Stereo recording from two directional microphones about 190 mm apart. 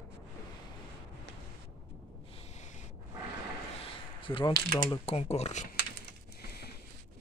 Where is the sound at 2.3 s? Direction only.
35° left (ahead or behind).